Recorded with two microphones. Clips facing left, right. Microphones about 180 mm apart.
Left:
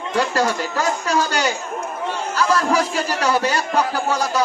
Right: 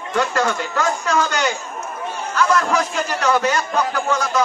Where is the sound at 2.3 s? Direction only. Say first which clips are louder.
Right 2 dB; 35° left (ahead or behind).